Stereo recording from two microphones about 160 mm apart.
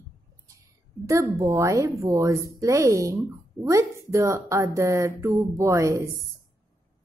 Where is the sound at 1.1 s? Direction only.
20° right (ahead or behind).